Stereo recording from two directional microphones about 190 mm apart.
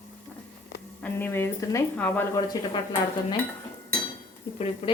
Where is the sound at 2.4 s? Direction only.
20° left (ahead or behind).